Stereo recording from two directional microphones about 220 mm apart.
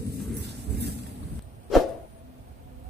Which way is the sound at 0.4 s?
50° right (ahead or behind).